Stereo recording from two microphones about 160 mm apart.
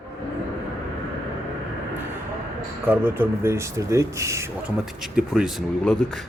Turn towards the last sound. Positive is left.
turn(degrees=0)  # may be behind; listen again after turning